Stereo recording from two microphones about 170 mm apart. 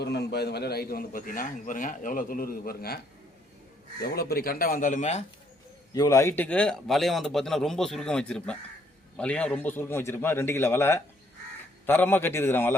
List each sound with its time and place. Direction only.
0.0 s a man's voice: 80° left
4.0 s a man's voice: 65° left (ahead or behind); by 5.2 s 45° left (ahead or behind)
5.9 s a man's voice: 20° left (ahead or behind)